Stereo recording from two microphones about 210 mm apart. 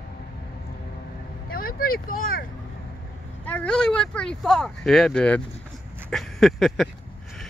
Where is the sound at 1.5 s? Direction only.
45° left (ahead or behind).